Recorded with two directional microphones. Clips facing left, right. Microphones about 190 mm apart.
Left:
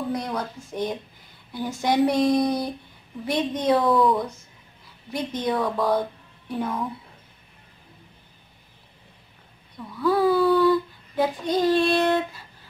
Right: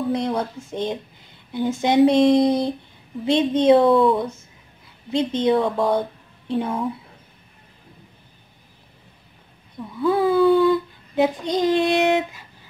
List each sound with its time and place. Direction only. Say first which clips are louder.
0.1 s a woman's voice: right 5 dB; 25° right (ahead or behind)
9.9 s a child's voice: right 2 dB; 20° right (ahead or behind)